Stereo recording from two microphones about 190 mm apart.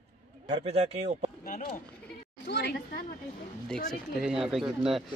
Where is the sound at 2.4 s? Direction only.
60° left (ahead or behind).